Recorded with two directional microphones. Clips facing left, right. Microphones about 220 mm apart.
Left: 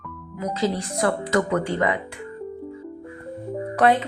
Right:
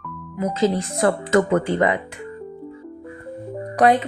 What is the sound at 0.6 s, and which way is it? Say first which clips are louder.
Speech: right 4 dB; 25° right (ahead or behind).